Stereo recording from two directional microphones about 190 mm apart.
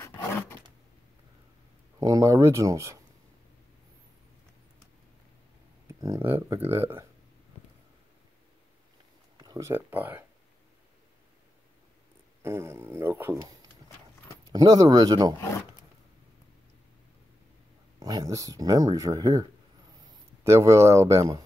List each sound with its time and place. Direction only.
0.0 s a sound: 10° left (ahead or behind)
2.0 s speech: 20° right (ahead or behind)
5.9 s speech: 15° right (ahead or behind)
9.4 s speech: 20° right (ahead or behind)
12.4 s speech: 15° right (ahead or behind)
17.9 s speech: 20° right (ahead or behind)
20.4 s speech: 15° right (ahead or behind)